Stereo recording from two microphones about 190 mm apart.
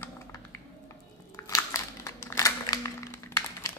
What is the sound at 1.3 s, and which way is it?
Crumpling, 15° left (ahead or behind).